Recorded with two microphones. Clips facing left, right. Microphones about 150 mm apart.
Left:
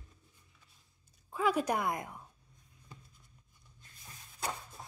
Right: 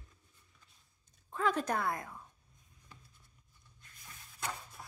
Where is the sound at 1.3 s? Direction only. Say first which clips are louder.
Left 2 dB; 10° left (ahead or behind).